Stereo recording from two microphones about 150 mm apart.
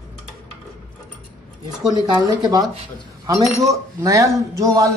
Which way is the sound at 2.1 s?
25° right (ahead or behind).